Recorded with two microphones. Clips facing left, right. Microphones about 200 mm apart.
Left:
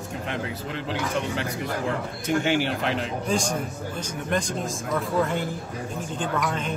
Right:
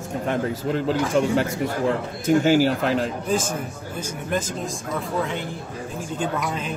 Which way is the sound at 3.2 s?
5° right (ahead or behind).